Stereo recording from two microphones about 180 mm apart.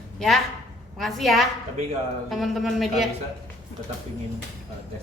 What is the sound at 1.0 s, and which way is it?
Speech, centre (ahead or behind).